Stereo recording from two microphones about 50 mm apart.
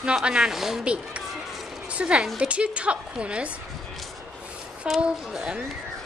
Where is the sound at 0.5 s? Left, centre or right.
Centre.